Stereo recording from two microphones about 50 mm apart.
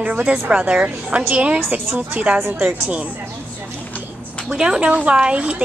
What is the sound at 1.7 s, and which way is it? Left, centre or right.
A woman's voice, right.